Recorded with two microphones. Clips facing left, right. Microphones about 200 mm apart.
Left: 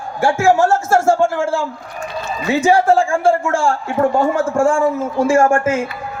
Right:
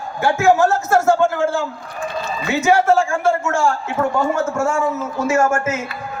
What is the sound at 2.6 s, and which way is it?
A man's voice, 30° left (ahead or behind).